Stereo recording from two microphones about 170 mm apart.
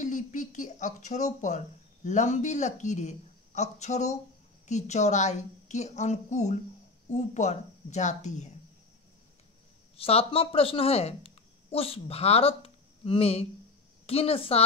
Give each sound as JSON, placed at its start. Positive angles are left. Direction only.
{"t": 0.0, "sound": "speech", "side_deg": 50}
{"t": 9.9, "sound": "a woman's voice", "side_deg": 35}